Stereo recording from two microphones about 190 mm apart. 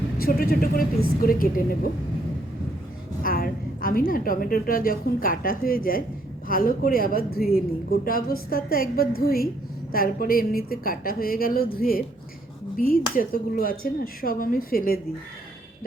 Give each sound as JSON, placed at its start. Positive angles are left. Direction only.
{"t": 0.2, "sound": "speech", "side_deg": 50}
{"t": 3.2, "sound": "a woman's voice", "side_deg": 50}
{"t": 13.1, "sound": "speech", "side_deg": 50}